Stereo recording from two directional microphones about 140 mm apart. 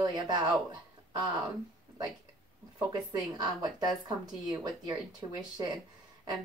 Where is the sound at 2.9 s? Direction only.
25° right (ahead or behind).